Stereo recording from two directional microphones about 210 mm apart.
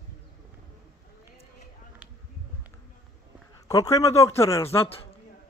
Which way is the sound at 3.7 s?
15° left (ahead or behind).